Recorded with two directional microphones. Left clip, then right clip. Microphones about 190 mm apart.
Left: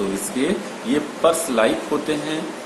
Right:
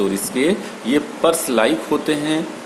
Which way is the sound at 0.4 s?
50° right (ahead or behind).